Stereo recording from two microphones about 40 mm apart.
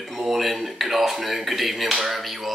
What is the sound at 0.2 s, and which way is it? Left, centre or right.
Speech, centre.